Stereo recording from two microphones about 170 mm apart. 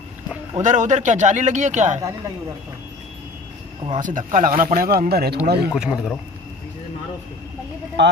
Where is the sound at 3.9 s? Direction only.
50° right (ahead or behind); by 5.7 s 70° right (ahead or behind).